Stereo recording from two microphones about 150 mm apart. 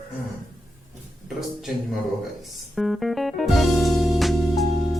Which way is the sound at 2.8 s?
Centre (ahead or behind).